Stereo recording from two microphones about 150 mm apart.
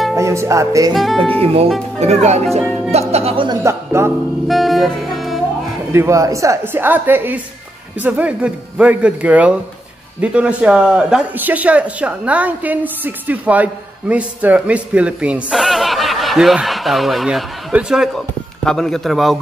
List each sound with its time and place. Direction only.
0.1 s speech: 20° right (ahead or behind)
0.9 s a man's voice: centre (ahead or behind)
1.4 s speech: 40° right (ahead or behind)
3.4 s speech: 20° right (ahead or behind)
4.5 s music: centre (ahead or behind)
5.9 s a man's voice: 20° right (ahead or behind); by 19.4 s centre (ahead or behind)